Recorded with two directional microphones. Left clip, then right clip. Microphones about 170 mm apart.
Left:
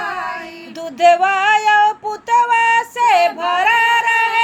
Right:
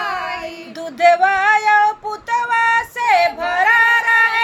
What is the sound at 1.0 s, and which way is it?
Music, 15° left (ahead or behind).